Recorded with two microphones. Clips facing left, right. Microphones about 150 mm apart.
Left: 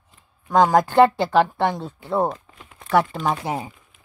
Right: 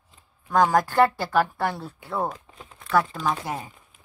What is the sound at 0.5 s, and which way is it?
Speech, 20° left (ahead or behind).